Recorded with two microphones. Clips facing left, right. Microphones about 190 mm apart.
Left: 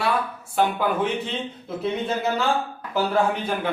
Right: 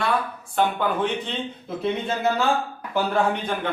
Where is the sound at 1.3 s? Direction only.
Centre (ahead or behind).